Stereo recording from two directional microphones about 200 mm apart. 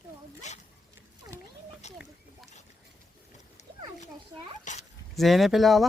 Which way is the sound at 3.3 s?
35° left (ahead or behind).